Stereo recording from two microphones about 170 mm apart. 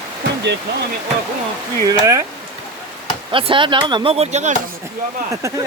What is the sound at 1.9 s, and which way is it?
Speech, 20° right (ahead or behind).